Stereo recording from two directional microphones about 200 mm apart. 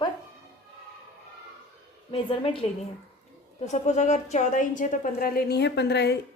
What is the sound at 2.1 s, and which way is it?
Speech, 25° left (ahead or behind).